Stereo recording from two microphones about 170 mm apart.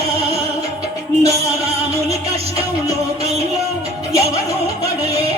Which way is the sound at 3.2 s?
40° right (ahead or behind).